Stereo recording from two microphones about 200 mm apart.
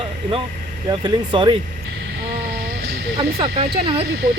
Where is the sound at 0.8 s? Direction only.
25° right (ahead or behind).